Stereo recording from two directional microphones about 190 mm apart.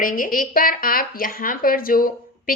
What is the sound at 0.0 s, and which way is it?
Speech, 45° left (ahead or behind).